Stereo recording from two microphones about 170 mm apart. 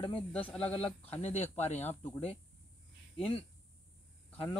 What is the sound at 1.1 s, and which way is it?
Speech, 40° left (ahead or behind).